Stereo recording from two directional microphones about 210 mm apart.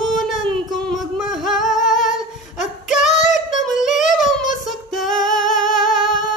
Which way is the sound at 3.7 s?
Centre (ahead or behind).